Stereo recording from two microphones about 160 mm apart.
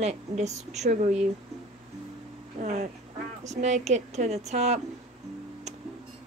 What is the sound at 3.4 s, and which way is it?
Speech, 45° right (ahead or behind).